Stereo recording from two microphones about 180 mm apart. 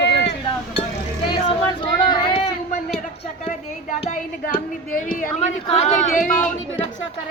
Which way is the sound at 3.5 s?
40° left (ahead or behind).